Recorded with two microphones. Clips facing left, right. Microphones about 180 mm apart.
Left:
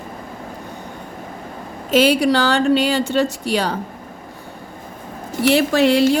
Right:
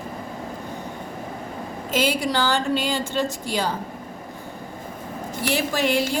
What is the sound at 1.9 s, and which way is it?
A woman's voice, 75° left (ahead or behind).